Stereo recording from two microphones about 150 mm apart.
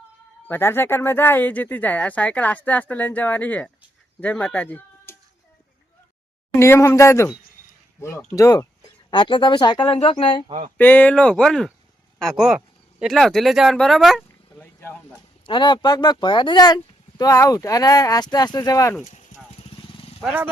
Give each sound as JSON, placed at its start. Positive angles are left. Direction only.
{"t": 0.4, "sound": "speech", "side_deg": 15}
{"t": 6.5, "sound": "speech", "side_deg": 15}
{"t": 8.4, "sound": "speech", "side_deg": 25}
{"t": 10.8, "sound": "speech", "side_deg": 10}
{"t": 14.6, "sound": "a sound", "side_deg": 15}
{"t": 15.4, "sound": "speech", "side_deg": 30}
{"t": 19.0, "sound": "clip-clop", "side_deg": 50}
{"t": 19.6, "sound": "vehicle", "side_deg": 40}
{"t": 20.2, "sound": "speech", "side_deg": -10}